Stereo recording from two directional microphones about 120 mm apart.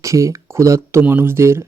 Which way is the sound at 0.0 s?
25° right (ahead or behind).